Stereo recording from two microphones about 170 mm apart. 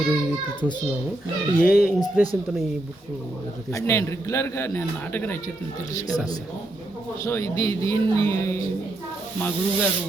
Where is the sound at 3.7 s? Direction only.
15° left (ahead or behind).